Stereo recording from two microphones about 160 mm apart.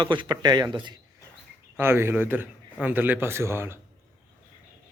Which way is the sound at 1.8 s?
15° right (ahead or behind).